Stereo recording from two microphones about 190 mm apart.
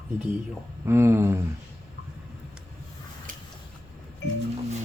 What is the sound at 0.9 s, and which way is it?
Speech, 15° right (ahead or behind).